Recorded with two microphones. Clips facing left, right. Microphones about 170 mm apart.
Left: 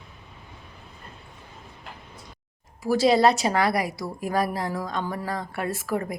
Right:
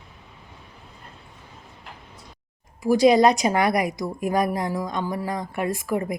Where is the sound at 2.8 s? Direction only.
15° right (ahead or behind).